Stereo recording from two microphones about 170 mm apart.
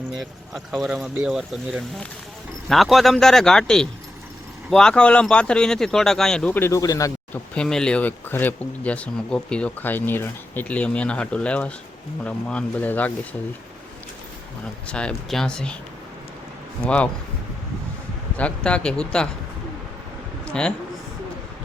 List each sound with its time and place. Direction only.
0.2 s speech: centre (ahead or behind); by 7.1 s 20° left (ahead or behind)
7.5 s speech: 5° left (ahead or behind)
14.8 s speech: 5° left (ahead or behind)
16.8 s speech: 5° left (ahead or behind)
18.3 s speech: 5° left (ahead or behind)
20.5 s speech: 5° left (ahead or behind)